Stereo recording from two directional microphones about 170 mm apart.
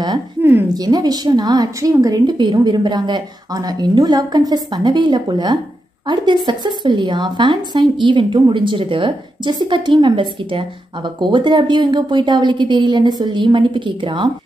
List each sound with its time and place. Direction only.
0.4 s speech: 10° right (ahead or behind)
0.7 s a woman's voice: 25° right (ahead or behind)